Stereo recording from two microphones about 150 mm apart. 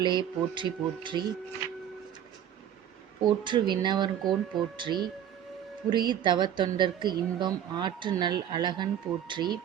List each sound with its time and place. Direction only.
0.0 s speech: 30° right (ahead or behind)
3.2 s speech: 30° right (ahead or behind)
4.2 s speech: centre (ahead or behind)
4.8 s speech: 30° right (ahead or behind)